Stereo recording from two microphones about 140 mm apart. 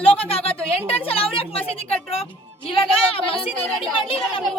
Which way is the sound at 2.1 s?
40° left (ahead or behind).